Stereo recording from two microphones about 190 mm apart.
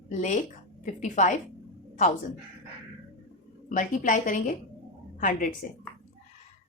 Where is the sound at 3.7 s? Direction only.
45° left (ahead or behind).